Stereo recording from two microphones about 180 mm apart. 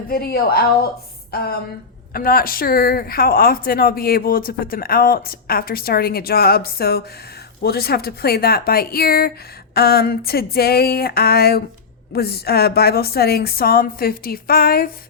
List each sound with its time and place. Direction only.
0.1 s speech: 55° left (ahead or behind)
2.1 s speech: 55° left (ahead or behind)